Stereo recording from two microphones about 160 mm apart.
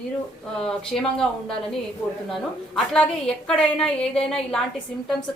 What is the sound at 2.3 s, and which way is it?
A woman's voice, 5° left (ahead or behind).